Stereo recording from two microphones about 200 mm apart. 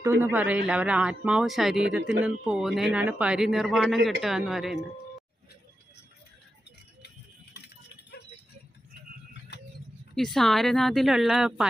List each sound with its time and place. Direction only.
0.0 s a man's voice: 10° right (ahead or behind)
7.5 s rattle: 55° left (ahead or behind)
10.2 s a man's voice: centre (ahead or behind)